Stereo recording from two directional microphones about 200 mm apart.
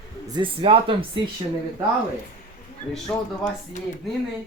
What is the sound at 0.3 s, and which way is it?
Speech, 25° right (ahead or behind).